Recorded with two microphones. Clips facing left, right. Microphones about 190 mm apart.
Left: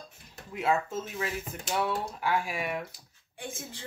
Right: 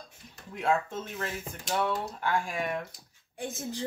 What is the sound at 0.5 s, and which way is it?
Speech, 5° left (ahead or behind).